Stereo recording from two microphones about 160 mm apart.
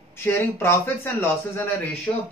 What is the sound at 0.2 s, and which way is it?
Speech, 15° left (ahead or behind).